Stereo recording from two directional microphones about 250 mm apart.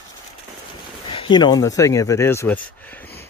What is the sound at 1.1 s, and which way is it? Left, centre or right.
Speech, centre.